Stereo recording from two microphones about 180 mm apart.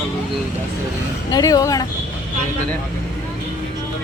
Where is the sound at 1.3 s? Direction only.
20° left (ahead or behind).